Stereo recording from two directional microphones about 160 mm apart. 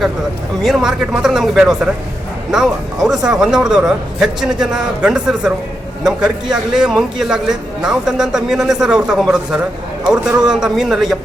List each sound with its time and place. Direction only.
0.6 s a man's voice: centre (ahead or behind)